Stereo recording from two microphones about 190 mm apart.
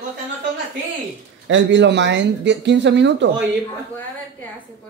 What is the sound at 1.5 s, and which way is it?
Speech, 75° right (ahead or behind).